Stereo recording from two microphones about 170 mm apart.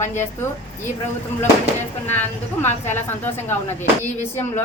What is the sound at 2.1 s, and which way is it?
Speech, 10° left (ahead or behind).